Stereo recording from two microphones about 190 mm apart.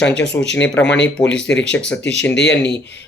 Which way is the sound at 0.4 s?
10° left (ahead or behind).